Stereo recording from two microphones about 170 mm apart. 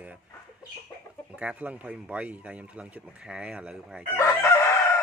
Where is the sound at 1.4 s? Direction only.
10° right (ahead or behind).